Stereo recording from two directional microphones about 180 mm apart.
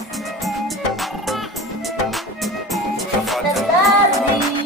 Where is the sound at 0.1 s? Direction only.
Centre (ahead or behind).